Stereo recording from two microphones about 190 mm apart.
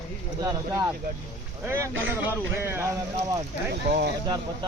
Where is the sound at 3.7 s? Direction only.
60° right (ahead or behind).